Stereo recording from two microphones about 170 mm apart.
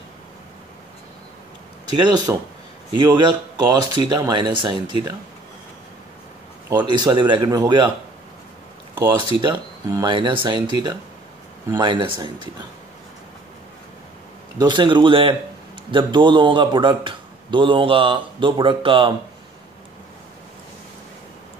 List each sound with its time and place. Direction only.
1.9 s a man's voice: 25° right (ahead or behind)
6.8 s a man's voice: 25° right (ahead or behind)
9.2 s a man's voice: 25° right (ahead or behind)
14.6 s a man's voice: 25° right (ahead or behind)